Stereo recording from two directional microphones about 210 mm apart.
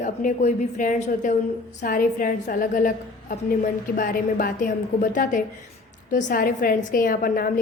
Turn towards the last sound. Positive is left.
turn(degrees=40)  # may be behind; listen again after turning